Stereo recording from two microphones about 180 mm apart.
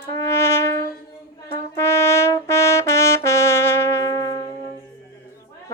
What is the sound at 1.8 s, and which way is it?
Brass instrument, 15° left (ahead or behind).